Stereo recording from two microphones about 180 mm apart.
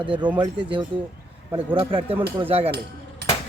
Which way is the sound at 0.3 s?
25° right (ahead or behind).